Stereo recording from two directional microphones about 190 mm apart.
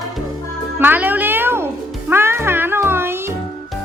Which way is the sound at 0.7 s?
10° right (ahead or behind).